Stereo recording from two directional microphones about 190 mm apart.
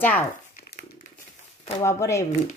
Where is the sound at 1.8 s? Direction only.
15° left (ahead or behind).